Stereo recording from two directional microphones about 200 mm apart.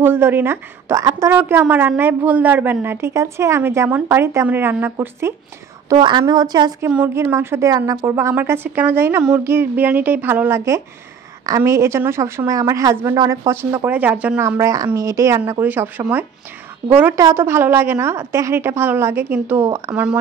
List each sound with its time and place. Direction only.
0.0 s a woman's voice: 10° right (ahead or behind)
5.9 s a woman's voice: 20° right (ahead or behind)
6.9 s a woman's voice: 10° right (ahead or behind)